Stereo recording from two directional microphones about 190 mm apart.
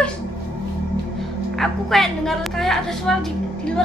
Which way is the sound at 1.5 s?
Centre (ahead or behind).